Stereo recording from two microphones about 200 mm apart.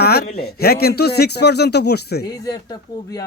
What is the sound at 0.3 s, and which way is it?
A man's voice, 50° left (ahead or behind).